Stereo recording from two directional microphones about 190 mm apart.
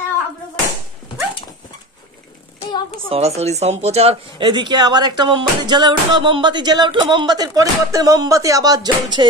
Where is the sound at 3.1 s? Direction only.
35° right (ahead or behind).